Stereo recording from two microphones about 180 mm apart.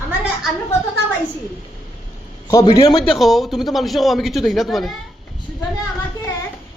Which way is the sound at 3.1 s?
Centre (ahead or behind).